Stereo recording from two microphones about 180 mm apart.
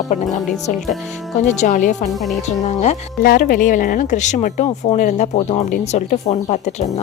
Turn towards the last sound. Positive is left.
turn(degrees=40)  # may be behind; listen again after turning